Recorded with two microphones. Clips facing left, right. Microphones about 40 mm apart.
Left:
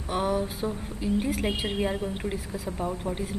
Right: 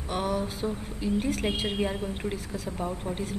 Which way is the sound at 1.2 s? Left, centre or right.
Centre.